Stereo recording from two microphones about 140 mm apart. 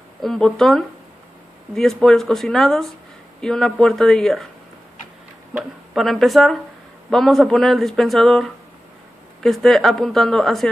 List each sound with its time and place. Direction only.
0.2 s speech: centre (ahead or behind)
5.6 s speech: centre (ahead or behind)